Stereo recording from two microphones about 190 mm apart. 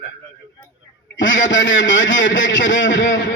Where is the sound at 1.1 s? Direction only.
75° left (ahead or behind).